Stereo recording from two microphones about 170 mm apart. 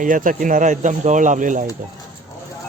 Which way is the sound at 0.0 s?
50° right (ahead or behind).